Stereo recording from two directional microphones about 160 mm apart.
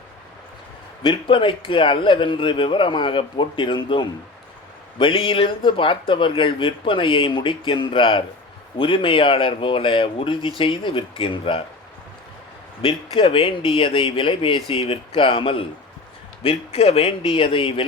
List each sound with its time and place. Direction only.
1.0 s speech: 30° left (ahead or behind)
12.8 s speech: 35° left (ahead or behind)